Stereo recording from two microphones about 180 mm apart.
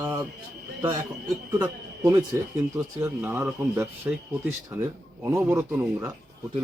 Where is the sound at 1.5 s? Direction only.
15° right (ahead or behind).